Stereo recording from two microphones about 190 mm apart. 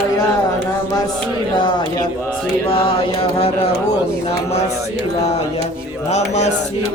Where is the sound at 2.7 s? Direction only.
30° left (ahead or behind).